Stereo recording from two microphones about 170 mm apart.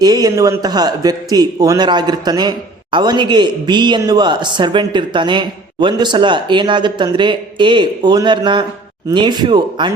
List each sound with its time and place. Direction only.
0.0 s a man's voice: 25° right (ahead or behind)